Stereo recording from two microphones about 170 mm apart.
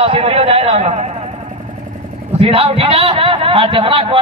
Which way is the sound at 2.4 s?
35° right (ahead or behind).